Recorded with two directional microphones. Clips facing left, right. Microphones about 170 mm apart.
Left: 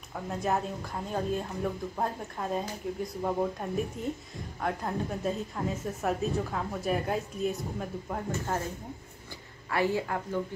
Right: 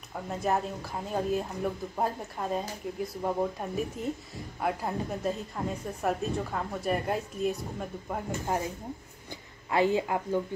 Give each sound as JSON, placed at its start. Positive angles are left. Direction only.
{"t": 0.3, "sound": "a woman's voice", "side_deg": 0}
{"t": 9.7, "sound": "a woman's voice", "side_deg": -20}